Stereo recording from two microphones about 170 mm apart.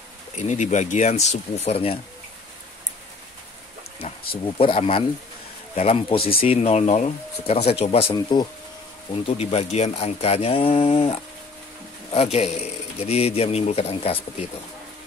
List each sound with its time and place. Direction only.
0.4 s speech: 45° left (ahead or behind)
4.6 s speech: 30° left (ahead or behind)